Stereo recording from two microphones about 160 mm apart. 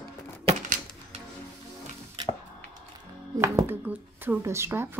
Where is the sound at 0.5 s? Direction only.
50° right (ahead or behind).